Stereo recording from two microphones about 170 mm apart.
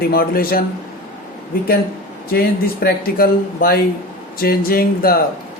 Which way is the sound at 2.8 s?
60° left (ahead or behind).